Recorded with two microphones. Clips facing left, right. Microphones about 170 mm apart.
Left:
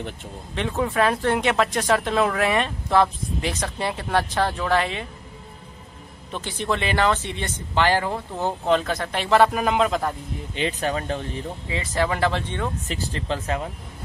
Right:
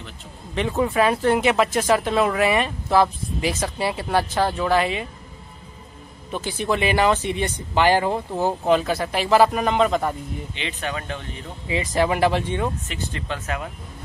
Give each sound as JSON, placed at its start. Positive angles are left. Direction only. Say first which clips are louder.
{"t": 0.6, "sound": "speech", "louder": "right 2 dB", "side_deg": 0}
{"t": 6.3, "sound": "speech", "louder": "right 2 dB", "side_deg": -5}
{"t": 8.4, "sound": "speech", "louder": "right 2 dB", "side_deg": -5}
{"t": 10.5, "sound": "speech", "louder": "left 7 dB", "side_deg": 40}
{"t": 11.7, "sound": "speech", "louder": "right 4 dB", "side_deg": -15}
{"t": 12.8, "sound": "speech", "louder": "left 2 dB", "side_deg": 35}